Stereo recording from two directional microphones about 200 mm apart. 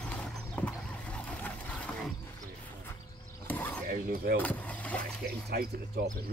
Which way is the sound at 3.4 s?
10° left (ahead or behind).